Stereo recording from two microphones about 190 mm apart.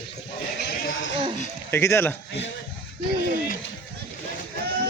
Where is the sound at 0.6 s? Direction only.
60° left (ahead or behind).